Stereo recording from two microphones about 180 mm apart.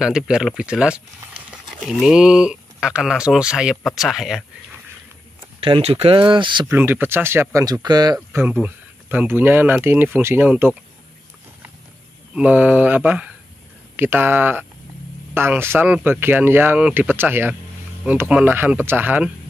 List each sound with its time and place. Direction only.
0.0 s speech: 5° right (ahead or behind)
5.6 s speech: 35° right (ahead or behind)
6.7 s speech: 10° right (ahead or behind)
12.4 s speech: 10° right (ahead or behind)